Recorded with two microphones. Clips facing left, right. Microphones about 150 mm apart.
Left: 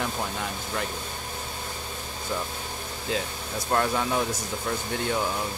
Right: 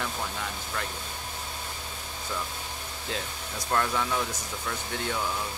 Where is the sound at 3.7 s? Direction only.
30° left (ahead or behind).